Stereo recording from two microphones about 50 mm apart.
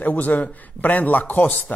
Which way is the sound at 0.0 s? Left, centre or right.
Left.